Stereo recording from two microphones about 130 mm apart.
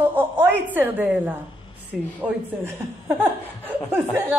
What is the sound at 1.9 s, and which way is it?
Speech, centre (ahead or behind).